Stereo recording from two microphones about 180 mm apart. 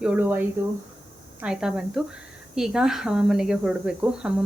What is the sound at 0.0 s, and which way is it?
Speech, 10° right (ahead or behind).